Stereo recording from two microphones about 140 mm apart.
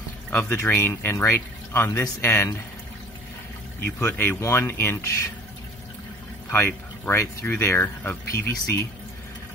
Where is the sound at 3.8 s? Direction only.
15° left (ahead or behind).